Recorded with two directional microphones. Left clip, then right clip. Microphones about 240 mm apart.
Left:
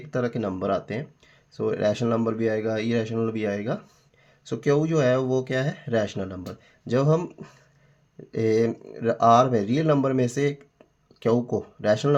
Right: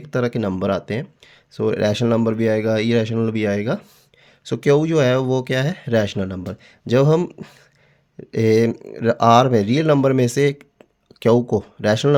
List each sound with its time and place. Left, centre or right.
0.1 s speech: right